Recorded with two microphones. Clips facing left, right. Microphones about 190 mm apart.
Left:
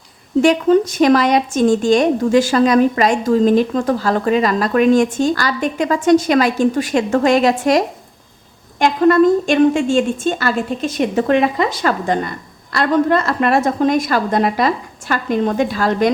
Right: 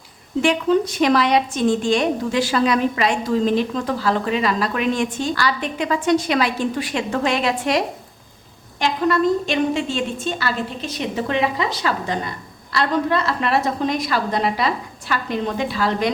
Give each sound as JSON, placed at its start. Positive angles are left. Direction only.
{"t": 0.4, "sound": "a woman's voice", "side_deg": 45}
{"t": 8.8, "sound": "a woman's voice", "side_deg": 50}